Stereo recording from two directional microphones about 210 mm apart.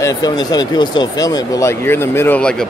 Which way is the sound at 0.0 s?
15° left (ahead or behind).